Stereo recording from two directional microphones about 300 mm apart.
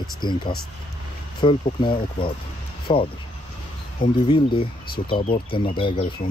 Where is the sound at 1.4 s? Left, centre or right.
Centre.